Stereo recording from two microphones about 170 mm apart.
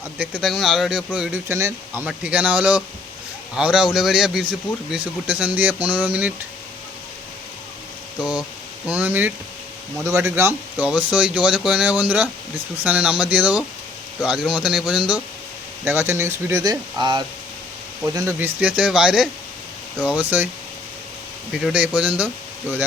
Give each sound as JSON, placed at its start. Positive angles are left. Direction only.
{"t": 0.2, "sound": "speech", "side_deg": -5}
{"t": 8.2, "sound": "speech", "side_deg": -5}
{"t": 20.3, "sound": "speech", "side_deg": -10}
{"t": 21.6, "sound": "speech", "side_deg": -5}